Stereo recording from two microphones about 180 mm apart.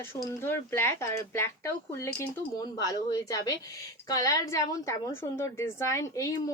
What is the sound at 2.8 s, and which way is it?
A woman's voice, 20° left (ahead or behind).